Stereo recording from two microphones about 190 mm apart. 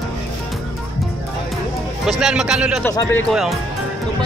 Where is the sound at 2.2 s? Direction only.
5° right (ahead or behind).